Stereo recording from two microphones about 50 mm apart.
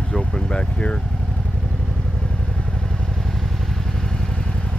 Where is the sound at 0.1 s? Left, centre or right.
Centre.